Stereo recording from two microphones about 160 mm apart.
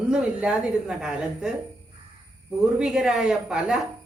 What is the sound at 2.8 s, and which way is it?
A woman's voice, 5° right (ahead or behind).